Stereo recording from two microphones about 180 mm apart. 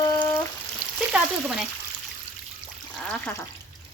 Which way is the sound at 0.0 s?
15° left (ahead or behind).